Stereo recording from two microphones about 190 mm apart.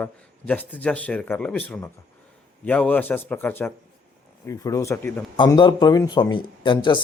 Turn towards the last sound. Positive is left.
turn(degrees=25)  # may be behind; listen again after turning